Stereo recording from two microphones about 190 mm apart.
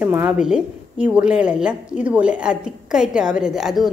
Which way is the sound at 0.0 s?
10° right (ahead or behind).